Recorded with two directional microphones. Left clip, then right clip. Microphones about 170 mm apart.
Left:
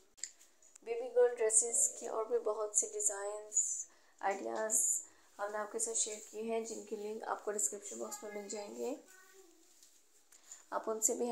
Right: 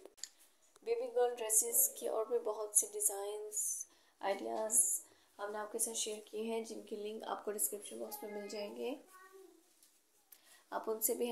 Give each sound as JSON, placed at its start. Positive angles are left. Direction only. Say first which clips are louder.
{"t": 0.2, "sound": "a sound", "louder": "left 3 dB", "side_deg": 5}
{"t": 0.8, "sound": "a woman's voice", "louder": "left 3 dB", "side_deg": 0}
{"t": 5.3, "sound": "speech", "louder": "left 3 dB", "side_deg": 10}
{"t": 10.7, "sound": "a woman's voice", "louder": "left 2 dB", "side_deg": 5}